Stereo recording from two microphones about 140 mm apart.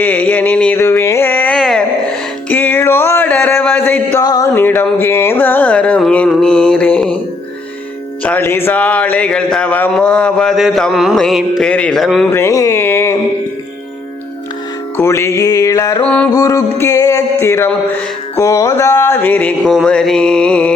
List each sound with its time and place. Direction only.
0.0 s a sound: 10° left (ahead or behind)
1.5 s a sound: 5° left (ahead or behind)
4.2 s speech: 25° left (ahead or behind)
8.2 s speech: 15° left (ahead or behind)
12.3 s speech: 20° left (ahead or behind)
14.9 s music: 20° left (ahead or behind)
16.0 s speech: 10° left (ahead or behind)
16.3 s music: 20° left (ahead or behind)
18.3 s speech: 20° left (ahead or behind)